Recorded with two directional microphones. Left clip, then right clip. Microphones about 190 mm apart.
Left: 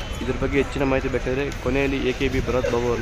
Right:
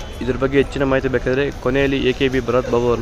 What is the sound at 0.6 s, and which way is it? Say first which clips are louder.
A man's voice: right 4 dB; 15° right (ahead or behind).